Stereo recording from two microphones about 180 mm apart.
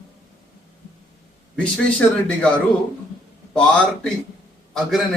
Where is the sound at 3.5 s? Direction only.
5° left (ahead or behind).